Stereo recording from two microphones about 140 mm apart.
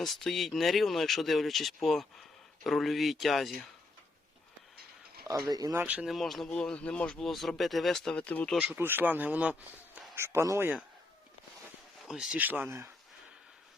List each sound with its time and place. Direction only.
0.0 s speech: centre (ahead or behind)
5.5 s speech: 25° right (ahead or behind)
5.8 s speech: 10° right (ahead or behind); by 8.5 s 10° left (ahead or behind)
8.5 s a man's voice: 10° right (ahead or behind)
10.2 s speech: 20° right (ahead or behind)
12.0 s a man's voice: 5° right (ahead or behind)